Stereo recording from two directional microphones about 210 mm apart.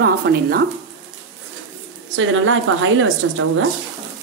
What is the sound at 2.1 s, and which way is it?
Speech, 65° right (ahead or behind).